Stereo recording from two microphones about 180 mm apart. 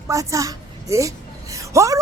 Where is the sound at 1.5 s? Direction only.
15° right (ahead or behind).